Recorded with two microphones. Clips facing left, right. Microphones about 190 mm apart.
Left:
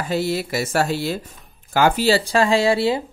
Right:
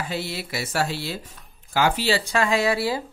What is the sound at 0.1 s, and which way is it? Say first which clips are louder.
Speech: left 8 dB; 45° left (ahead or behind).